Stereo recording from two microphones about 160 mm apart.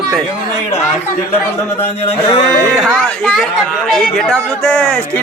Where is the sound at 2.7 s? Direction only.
5° left (ahead or behind).